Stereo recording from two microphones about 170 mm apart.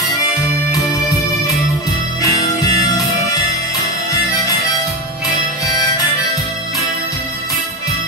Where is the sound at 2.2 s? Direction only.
20° left (ahead or behind).